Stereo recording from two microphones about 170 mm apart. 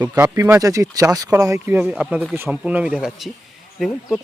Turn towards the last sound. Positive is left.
turn(degrees=0)  # may be behind; listen again after turning